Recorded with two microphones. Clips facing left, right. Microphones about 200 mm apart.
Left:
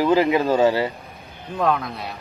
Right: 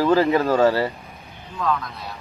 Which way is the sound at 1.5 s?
70° left (ahead or behind).